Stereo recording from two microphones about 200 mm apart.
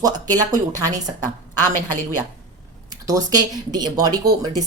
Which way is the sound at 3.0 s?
20° right (ahead or behind).